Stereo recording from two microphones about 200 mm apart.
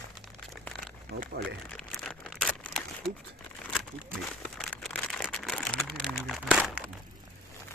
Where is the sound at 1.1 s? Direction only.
50° right (ahead or behind).